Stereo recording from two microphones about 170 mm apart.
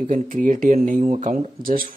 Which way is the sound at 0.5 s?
50° right (ahead or behind).